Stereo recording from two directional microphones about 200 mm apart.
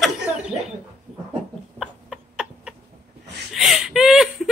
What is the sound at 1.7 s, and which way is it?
Chicken, 5° right (ahead or behind).